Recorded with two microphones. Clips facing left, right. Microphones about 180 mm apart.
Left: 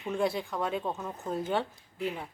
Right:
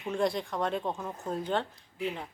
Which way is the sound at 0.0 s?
5° left (ahead or behind).